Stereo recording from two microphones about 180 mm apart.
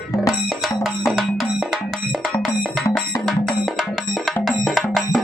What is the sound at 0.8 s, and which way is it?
Music, centre (ahead or behind).